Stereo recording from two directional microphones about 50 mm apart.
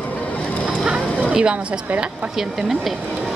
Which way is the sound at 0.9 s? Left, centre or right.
Centre.